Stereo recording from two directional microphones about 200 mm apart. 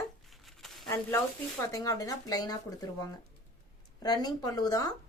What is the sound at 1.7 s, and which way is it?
Speech, 15° left (ahead or behind).